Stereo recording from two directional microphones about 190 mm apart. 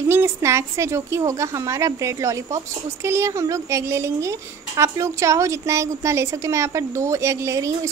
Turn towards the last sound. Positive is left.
turn(degrees=-15)  # may be behind; listen again after turning